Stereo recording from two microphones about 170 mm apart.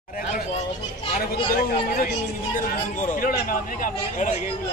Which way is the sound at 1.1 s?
65° left (ahead or behind).